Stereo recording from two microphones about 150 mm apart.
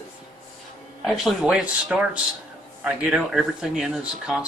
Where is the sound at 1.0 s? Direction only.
5° right (ahead or behind).